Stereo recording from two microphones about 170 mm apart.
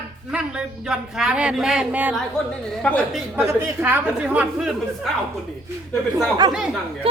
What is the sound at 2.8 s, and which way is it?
Speech, 5° left (ahead or behind).